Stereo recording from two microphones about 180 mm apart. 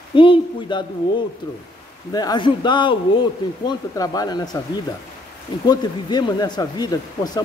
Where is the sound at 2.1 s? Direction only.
20° left (ahead or behind).